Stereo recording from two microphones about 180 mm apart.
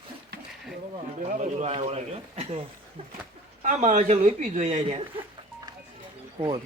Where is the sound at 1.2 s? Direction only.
40° right (ahead or behind).